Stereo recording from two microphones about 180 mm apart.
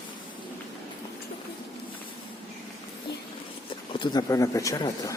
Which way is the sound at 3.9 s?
25° left (ahead or behind).